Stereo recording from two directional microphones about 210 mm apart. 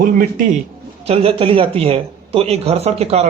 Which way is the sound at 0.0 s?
45° right (ahead or behind).